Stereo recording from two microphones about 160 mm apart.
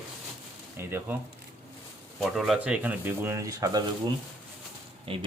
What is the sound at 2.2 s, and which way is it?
Speech, centre (ahead or behind).